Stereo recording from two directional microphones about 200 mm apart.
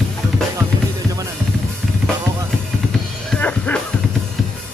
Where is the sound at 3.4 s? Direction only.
5° left (ahead or behind).